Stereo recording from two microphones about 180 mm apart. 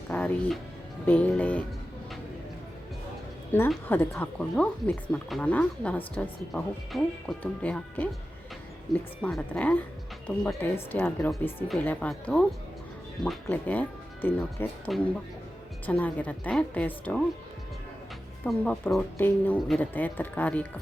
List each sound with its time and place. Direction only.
0.1 s speech: 10° left (ahead or behind)
3.5 s speech: 10° left (ahead or behind)
14.8 s speech: centre (ahead or behind)
18.4 s speech: 5° left (ahead or behind)